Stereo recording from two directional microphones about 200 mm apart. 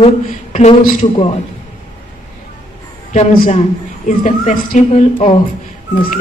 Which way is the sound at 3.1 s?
35° left (ahead or behind).